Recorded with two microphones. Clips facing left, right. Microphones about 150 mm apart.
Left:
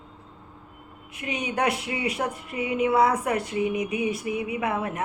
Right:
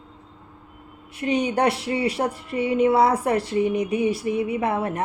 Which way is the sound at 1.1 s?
35° right (ahead or behind).